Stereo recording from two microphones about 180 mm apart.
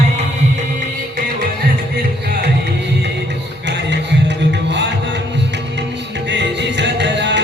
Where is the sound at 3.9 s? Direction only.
75° right (ahead or behind).